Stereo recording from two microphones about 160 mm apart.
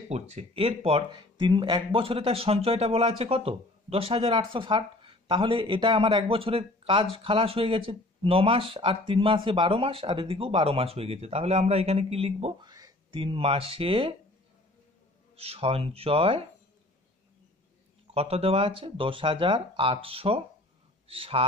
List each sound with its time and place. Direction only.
0.1 s speech: 45° right (ahead or behind)
12.6 s speech: 25° right (ahead or behind)
15.3 s speech: 40° right (ahead or behind)
18.1 s speech: 40° right (ahead or behind)